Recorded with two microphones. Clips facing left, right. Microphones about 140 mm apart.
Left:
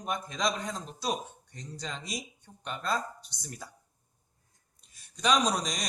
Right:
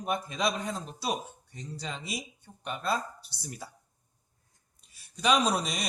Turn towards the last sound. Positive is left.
turn(degrees=-5)  # may be behind; listen again after turning